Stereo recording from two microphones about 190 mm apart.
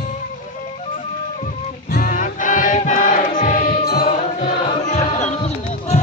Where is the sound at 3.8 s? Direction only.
55° left (ahead or behind).